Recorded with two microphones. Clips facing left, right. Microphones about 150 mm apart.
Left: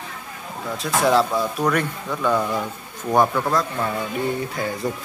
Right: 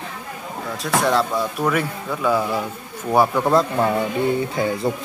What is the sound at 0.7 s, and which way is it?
Speech, centre (ahead or behind).